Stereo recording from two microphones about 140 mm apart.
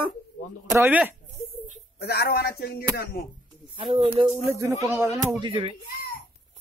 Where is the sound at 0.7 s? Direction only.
15° right (ahead or behind).